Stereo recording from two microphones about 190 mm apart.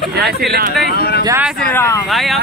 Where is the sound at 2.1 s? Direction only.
Centre (ahead or behind).